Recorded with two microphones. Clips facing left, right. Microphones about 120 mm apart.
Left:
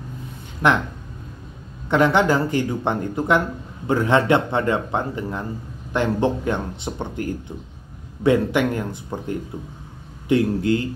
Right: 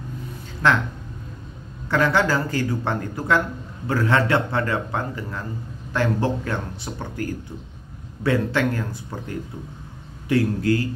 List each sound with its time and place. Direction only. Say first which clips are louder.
0.6 s speech: left 1 dB; 20° left (ahead or behind)
1.9 s speech: left 3 dB; 20° left (ahead or behind)